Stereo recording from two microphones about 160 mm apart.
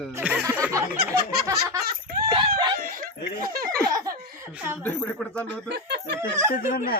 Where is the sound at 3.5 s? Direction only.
65° right (ahead or behind).